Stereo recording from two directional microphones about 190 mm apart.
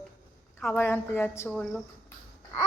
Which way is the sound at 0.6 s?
10° left (ahead or behind).